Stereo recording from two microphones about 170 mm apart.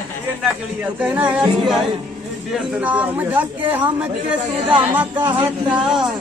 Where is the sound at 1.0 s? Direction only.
5° right (ahead or behind).